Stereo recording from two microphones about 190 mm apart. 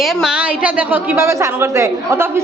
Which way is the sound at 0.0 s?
Centre (ahead or behind).